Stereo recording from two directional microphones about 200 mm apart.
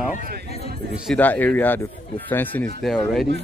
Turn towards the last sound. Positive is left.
turn(degrees=0)  # may be behind; listen again after turning